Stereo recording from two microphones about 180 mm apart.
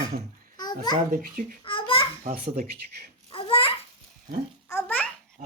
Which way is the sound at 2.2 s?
50° right (ahead or behind).